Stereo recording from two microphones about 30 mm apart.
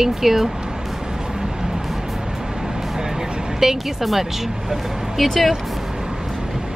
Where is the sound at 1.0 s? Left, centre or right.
Centre.